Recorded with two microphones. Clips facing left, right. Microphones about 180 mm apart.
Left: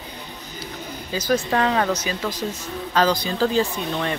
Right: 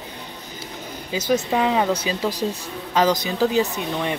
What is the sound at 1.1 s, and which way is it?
Speech, 25° right (ahead or behind).